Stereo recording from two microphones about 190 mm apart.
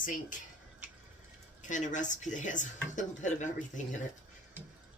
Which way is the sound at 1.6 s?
40° left (ahead or behind).